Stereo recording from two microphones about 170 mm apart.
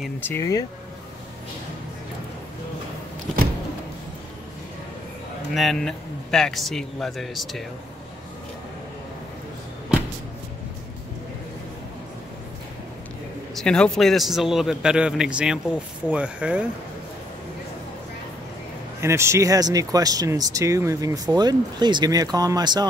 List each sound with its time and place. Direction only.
0.2 s speech: 15° left (ahead or behind)
5.5 s a man's voice: centre (ahead or behind)
13.6 s a man's voice: 5° left (ahead or behind)
18.9 s speech: 15° right (ahead or behind)